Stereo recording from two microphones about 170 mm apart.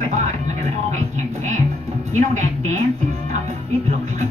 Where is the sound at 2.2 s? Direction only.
45° right (ahead or behind).